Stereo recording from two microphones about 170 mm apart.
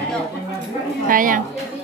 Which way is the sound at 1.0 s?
55° right (ahead or behind).